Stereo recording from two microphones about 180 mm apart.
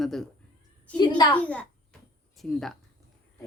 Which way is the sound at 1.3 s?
10° left (ahead or behind).